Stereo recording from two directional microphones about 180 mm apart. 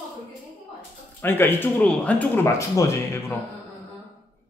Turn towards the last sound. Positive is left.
turn(degrees=15)  # may be behind; listen again after turning